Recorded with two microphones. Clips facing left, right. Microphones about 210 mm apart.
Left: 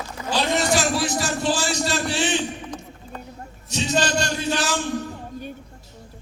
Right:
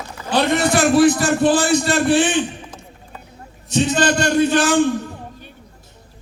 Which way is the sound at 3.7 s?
55° right (ahead or behind).